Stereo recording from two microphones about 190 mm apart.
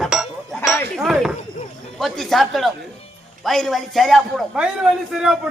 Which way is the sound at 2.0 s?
Centre (ahead or behind).